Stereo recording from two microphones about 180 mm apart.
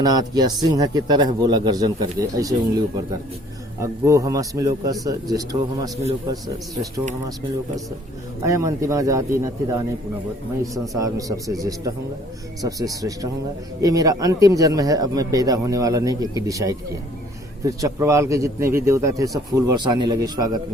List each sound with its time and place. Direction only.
0.0 s a man's voice: 20° right (ahead or behind)
8.4 s a man's voice: 15° right (ahead or behind)
12.6 s a man's voice: 20° right (ahead or behind)